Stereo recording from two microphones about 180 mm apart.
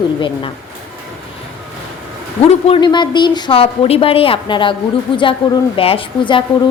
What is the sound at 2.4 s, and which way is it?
A woman's voice, 35° left (ahead or behind).